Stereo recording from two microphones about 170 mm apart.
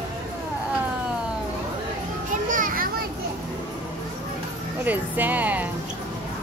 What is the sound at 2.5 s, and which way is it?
Children playing, 55° right (ahead or behind).